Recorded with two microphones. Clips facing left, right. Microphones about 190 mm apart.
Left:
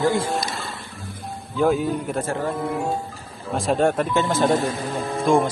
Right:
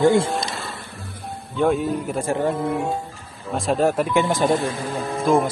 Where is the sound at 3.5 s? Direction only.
Centre (ahead or behind).